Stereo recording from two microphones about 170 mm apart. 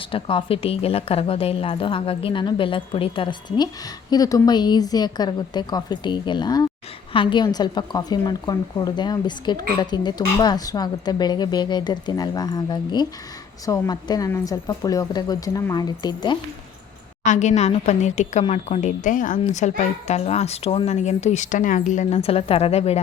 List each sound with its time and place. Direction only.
0.1 s a woman's voice: 30° left (ahead or behind)
17.2 s a woman's voice: 45° left (ahead or behind)